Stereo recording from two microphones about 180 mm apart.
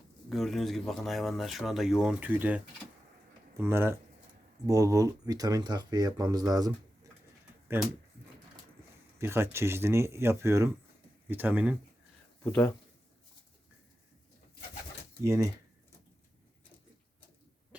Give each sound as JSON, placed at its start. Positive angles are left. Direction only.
{"t": 0.3, "sound": "speech", "side_deg": 0}
{"t": 3.6, "sound": "speech", "side_deg": -15}
{"t": 9.1, "sound": "speech", "side_deg": -15}
{"t": 12.4, "sound": "speech", "side_deg": 10}
{"t": 15.2, "sound": "speech", "side_deg": -15}